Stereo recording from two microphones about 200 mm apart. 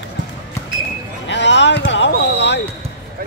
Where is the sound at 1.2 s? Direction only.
60° left (ahead or behind).